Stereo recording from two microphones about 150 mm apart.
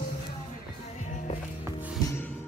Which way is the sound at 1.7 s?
20° right (ahead or behind).